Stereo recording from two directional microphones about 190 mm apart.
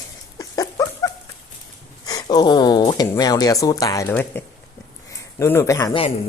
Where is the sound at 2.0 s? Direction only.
20° left (ahead or behind).